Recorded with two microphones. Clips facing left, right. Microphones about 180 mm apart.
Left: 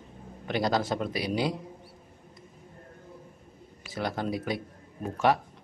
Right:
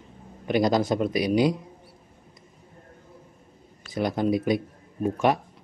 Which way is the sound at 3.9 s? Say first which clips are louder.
Right 7 dB; 15° right (ahead or behind).